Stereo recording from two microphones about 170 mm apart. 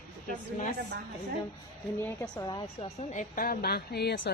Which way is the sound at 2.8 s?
40° left (ahead or behind).